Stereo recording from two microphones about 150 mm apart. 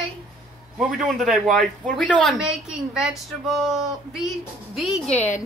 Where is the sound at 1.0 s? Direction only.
Centre (ahead or behind).